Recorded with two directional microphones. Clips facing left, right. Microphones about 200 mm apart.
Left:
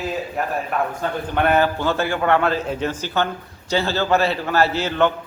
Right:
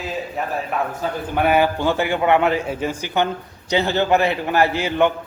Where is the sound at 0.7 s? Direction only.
Centre (ahead or behind).